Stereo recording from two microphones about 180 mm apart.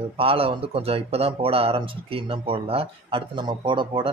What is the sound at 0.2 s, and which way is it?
Speech, 30° right (ahead or behind).